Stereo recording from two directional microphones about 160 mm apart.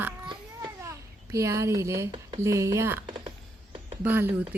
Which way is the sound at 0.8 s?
20° right (ahead or behind).